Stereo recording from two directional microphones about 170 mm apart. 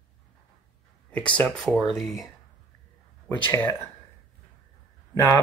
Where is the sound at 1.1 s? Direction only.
10° left (ahead or behind).